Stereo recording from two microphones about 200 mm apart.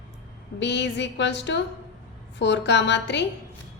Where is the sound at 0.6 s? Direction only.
60° left (ahead or behind).